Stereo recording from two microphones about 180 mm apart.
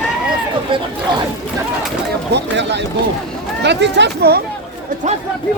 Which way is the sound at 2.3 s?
75° right (ahead or behind).